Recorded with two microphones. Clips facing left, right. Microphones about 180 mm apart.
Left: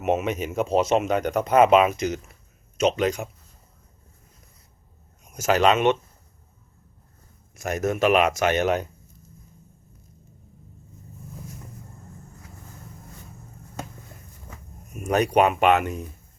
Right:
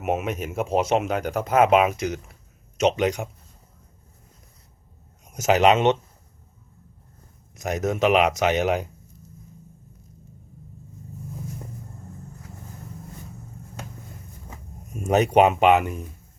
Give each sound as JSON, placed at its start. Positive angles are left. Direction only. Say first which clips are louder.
{"t": 0.0, "sound": "speech", "louder": "left 2 dB", "side_deg": -10}
{"t": 5.3, "sound": "speech", "louder": "right 2 dB", "side_deg": -20}
{"t": 7.5, "sound": "speech", "louder": "even", "side_deg": -15}
{"t": 14.9, "sound": "speech", "louder": "right 2 dB", "side_deg": -20}